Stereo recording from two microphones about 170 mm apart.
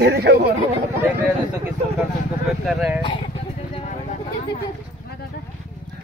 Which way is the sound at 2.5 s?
Centre (ahead or behind).